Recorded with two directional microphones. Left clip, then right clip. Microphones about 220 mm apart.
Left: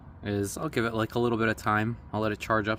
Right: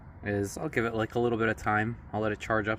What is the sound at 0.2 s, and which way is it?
Speech, 10° left (ahead or behind).